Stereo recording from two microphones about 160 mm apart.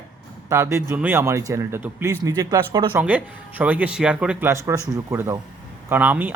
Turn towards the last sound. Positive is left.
turn(degrees=-10)  # may be behind; listen again after turning